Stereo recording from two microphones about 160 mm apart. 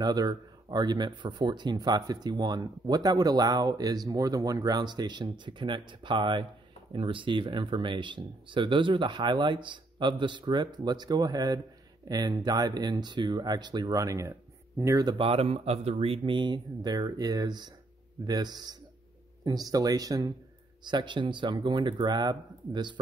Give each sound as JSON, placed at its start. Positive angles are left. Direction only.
{"t": 0.0, "sound": "speech", "side_deg": -25}